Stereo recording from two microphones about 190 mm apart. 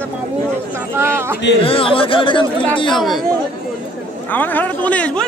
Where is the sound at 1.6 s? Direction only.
30° left (ahead or behind).